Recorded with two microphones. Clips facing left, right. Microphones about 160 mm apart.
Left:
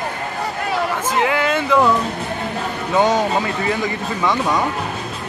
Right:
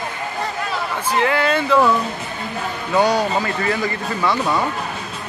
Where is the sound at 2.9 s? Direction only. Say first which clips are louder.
Left 1 dB; 20° left (ahead or behind).